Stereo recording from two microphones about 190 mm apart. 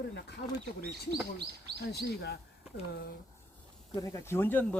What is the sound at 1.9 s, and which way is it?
Speech, 60° left (ahead or behind).